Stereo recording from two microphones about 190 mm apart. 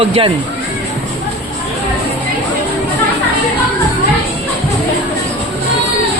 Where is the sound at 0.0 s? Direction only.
30° right (ahead or behind).